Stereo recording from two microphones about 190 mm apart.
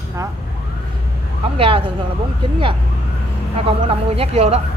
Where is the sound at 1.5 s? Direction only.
30° right (ahead or behind).